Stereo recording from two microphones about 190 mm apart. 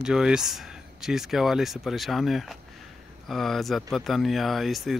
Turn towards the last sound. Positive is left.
turn(degrees=0)  # may be behind; listen again after turning